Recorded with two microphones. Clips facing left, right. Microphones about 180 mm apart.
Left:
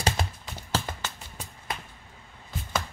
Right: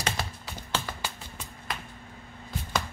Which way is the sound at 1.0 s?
10° right (ahead or behind).